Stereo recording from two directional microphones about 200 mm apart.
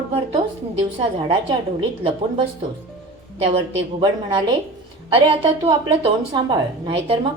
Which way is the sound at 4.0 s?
25° right (ahead or behind).